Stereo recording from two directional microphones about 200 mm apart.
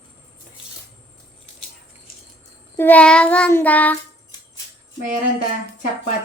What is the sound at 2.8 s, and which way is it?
A child's voice, 5° left (ahead or behind).